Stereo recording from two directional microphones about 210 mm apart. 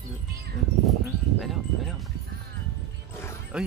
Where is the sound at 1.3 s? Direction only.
Centre (ahead or behind).